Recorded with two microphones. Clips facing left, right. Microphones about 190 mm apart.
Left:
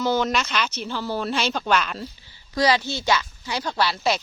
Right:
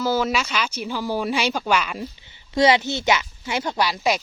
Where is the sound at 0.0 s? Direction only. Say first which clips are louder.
Even; 5° right (ahead or behind).